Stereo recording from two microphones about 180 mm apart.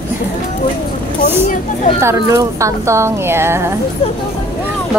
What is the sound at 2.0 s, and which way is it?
Speech, 15° right (ahead or behind).